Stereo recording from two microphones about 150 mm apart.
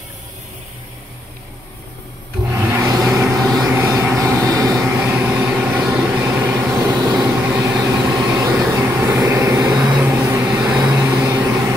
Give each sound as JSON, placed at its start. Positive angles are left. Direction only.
{"t": 2.5, "sound": "vehicle", "side_deg": -25}